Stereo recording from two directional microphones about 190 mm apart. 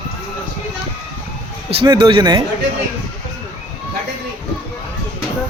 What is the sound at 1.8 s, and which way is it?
Speech, 25° right (ahead or behind).